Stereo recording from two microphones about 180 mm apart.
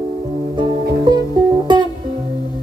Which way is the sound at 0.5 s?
25° right (ahead or behind).